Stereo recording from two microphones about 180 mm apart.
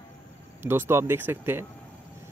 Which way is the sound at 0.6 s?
15° right (ahead or behind).